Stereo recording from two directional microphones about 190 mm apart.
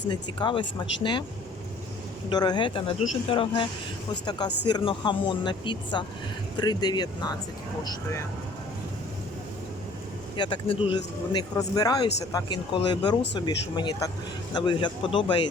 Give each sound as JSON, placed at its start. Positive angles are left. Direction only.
{"t": 0.1, "sound": "speech", "side_deg": 25}
{"t": 2.3, "sound": "speech", "side_deg": 20}
{"t": 10.3, "sound": "speech", "side_deg": 25}